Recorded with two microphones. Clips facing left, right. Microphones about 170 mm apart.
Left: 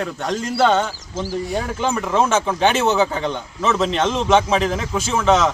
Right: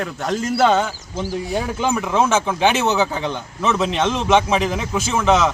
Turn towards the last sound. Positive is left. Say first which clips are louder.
# even
turn(degrees=-5)  # may be behind; listen again after turning